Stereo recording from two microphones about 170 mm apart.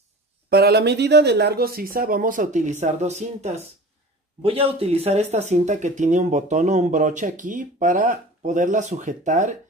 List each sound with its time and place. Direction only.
0.5 s speech: 70° right (ahead or behind); by 9.6 s 45° right (ahead or behind)